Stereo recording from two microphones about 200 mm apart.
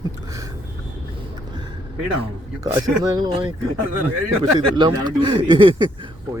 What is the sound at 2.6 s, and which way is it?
Speech, 15° right (ahead or behind).